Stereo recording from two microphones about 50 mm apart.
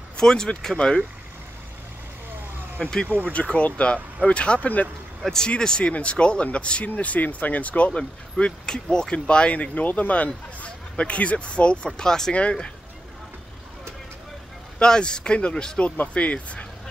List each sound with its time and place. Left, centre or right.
0.2 s speech: centre
2.8 s speech: centre
5.2 s speech: centre
14.8 s speech: centre
16.1 s speech: left